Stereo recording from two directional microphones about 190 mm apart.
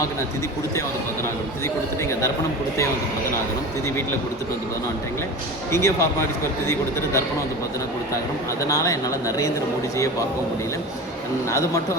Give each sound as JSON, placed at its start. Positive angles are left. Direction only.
{"t": 1.6, "sound": "speech", "side_deg": 15}
{"t": 5.7, "sound": "speech", "side_deg": 15}
{"t": 8.6, "sound": "speech", "side_deg": 15}
{"t": 11.4, "sound": "speech", "side_deg": 15}